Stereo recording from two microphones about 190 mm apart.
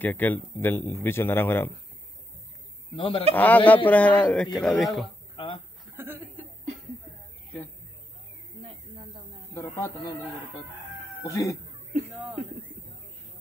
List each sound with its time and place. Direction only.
0.0 s speech: 10° left (ahead or behind)
3.0 s speech: 30° left (ahead or behind)
3.3 s speech: 10° left (ahead or behind)
5.3 s a sound: 25° left (ahead or behind)
5.9 s chuckle: 10° right (ahead or behind)
9.5 s a man's voice: 15° left (ahead or behind)
11.2 s speech: 15° left (ahead or behind)